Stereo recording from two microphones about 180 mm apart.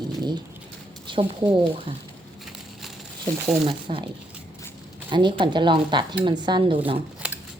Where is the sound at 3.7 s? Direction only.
30° right (ahead or behind).